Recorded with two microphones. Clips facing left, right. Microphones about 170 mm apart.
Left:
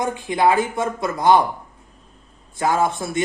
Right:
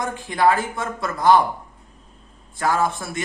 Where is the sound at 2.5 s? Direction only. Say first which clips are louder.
Left 2 dB; 20° left (ahead or behind).